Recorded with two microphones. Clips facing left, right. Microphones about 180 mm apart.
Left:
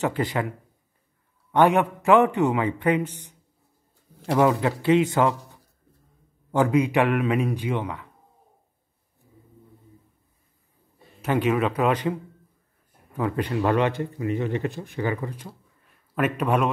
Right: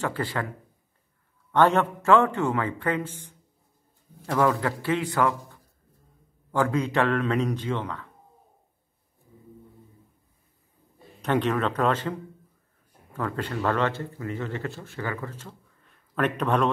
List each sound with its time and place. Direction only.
0.0 s speech: 20° left (ahead or behind)
1.5 s speech: 15° left (ahead or behind)
4.3 s a man's voice: 20° left (ahead or behind)
6.5 s speech: 15° left (ahead or behind)
11.1 s speech: 5° left (ahead or behind)